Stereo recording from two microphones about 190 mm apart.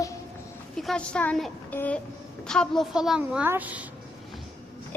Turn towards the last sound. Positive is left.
turn(degrees=-10)  # may be behind; listen again after turning